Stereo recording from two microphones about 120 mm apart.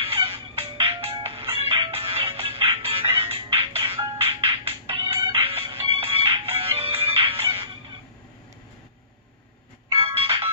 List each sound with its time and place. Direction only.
0.0 s music: 50° right (ahead or behind)
9.9 s ringtone: 50° right (ahead or behind)